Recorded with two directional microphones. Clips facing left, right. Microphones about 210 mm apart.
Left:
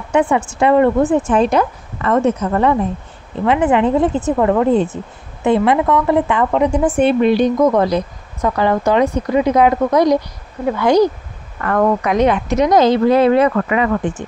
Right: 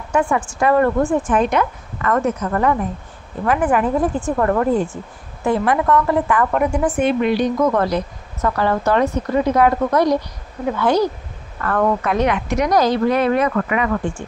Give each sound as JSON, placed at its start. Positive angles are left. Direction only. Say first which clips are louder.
{"t": 0.1, "sound": "a woman's voice", "louder": "left 4 dB", "side_deg": 20}